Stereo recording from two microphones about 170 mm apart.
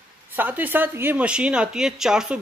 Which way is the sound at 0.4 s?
10° right (ahead or behind).